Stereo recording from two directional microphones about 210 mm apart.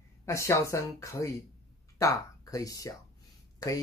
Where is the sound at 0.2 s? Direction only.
15° left (ahead or behind).